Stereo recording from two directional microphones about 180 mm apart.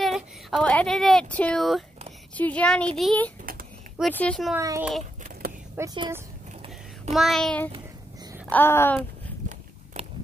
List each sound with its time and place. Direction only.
0.0 s speech: centre (ahead or behind)
4.6 s a child's voice: 15° right (ahead or behind)
7.2 s speech: centre (ahead or behind)